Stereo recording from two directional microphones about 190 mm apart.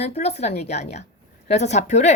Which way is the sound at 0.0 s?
35° left (ahead or behind).